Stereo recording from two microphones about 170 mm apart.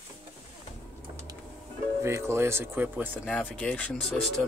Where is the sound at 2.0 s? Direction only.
15° right (ahead or behind).